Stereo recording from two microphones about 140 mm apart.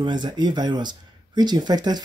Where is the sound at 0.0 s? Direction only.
30° right (ahead or behind).